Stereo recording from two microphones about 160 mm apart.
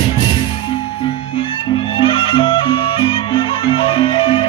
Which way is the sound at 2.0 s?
35° left (ahead or behind).